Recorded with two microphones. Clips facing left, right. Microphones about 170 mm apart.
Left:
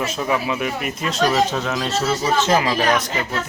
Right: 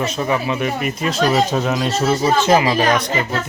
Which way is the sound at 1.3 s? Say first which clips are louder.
Right 3 dB; 15° right (ahead or behind).